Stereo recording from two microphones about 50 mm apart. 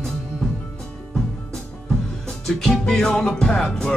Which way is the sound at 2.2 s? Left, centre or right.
Centre.